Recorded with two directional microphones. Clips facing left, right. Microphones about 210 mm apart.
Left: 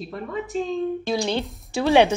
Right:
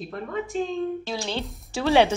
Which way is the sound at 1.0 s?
15° left (ahead or behind).